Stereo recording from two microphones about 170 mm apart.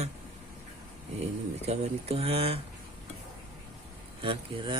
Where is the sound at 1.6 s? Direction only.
35° right (ahead or behind).